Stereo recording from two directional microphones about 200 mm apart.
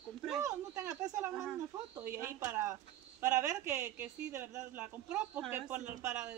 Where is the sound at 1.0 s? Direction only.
15° right (ahead or behind).